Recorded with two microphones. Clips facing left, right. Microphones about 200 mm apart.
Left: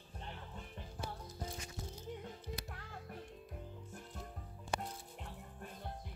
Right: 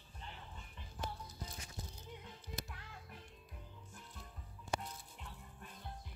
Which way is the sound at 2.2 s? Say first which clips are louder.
Left 4 dB; 45° left (ahead or behind).